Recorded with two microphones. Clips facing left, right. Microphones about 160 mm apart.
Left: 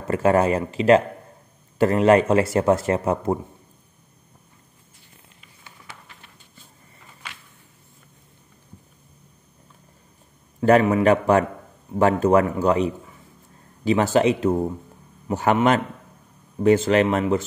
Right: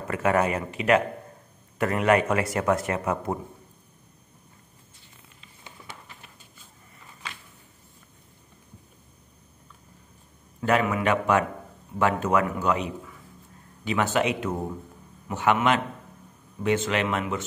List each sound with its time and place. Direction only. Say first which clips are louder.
0.1 s a man's voice: left 5 dB; 30° left (ahead or behind)
10.6 s a man's voice: left 7 dB; 35° left (ahead or behind)